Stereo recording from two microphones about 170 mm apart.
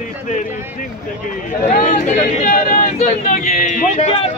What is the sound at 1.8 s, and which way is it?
A man's voice, 45° left (ahead or behind).